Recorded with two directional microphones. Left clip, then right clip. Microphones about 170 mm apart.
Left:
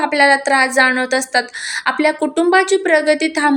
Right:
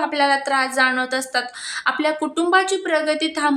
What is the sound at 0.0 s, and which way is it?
A woman's voice, 20° left (ahead or behind).